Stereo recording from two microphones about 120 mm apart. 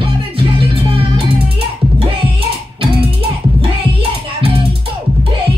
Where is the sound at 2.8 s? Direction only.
50° right (ahead or behind).